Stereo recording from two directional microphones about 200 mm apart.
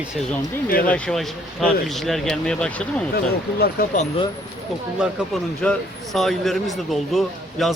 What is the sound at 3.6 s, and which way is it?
Speech, 45° left (ahead or behind).